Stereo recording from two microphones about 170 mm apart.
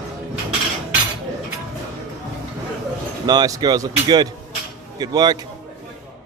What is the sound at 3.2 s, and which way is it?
Speech, 20° right (ahead or behind).